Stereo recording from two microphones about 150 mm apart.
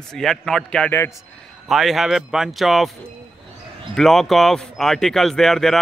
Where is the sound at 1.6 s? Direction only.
Centre (ahead or behind).